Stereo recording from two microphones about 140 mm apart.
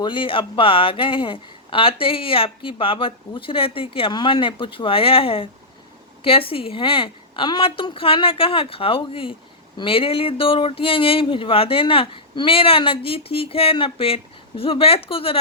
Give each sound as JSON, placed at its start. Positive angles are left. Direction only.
{"t": 0.0, "sound": "speech", "side_deg": 35}